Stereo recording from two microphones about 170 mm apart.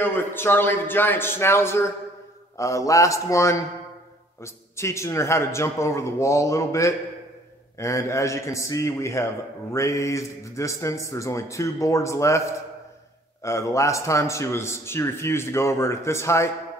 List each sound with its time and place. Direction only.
0.0 s a man's voice: 10° left (ahead or behind)